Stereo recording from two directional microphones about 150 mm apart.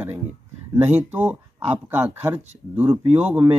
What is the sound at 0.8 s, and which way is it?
Speech, 10° right (ahead or behind).